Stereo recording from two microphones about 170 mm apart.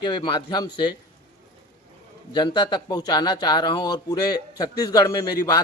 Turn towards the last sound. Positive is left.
turn(degrees=20)  # may be behind; listen again after turning